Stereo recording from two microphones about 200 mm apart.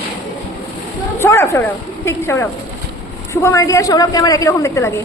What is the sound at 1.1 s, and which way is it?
A woman's voice, 10° left (ahead or behind).